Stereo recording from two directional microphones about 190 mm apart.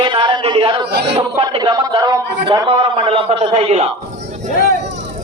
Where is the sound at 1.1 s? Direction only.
30° right (ahead or behind).